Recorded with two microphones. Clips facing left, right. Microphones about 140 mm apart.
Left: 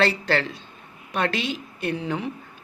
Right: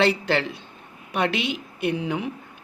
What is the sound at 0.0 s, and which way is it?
Speech, 15° right (ahead or behind).